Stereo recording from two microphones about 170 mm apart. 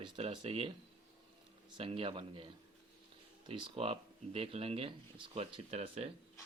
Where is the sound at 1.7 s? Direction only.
35° right (ahead or behind).